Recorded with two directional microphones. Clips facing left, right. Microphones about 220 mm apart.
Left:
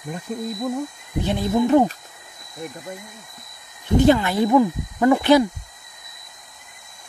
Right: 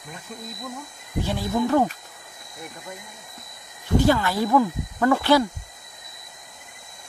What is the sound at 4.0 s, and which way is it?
Speech, 20° left (ahead or behind).